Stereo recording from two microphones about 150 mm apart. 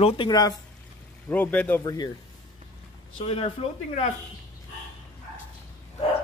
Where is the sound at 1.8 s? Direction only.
25° left (ahead or behind).